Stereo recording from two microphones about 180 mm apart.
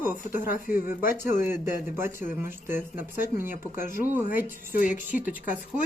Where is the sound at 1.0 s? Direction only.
50° left (ahead or behind).